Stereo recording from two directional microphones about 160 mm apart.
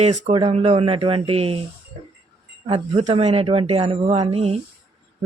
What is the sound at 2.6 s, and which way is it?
Speech, 35° right (ahead or behind).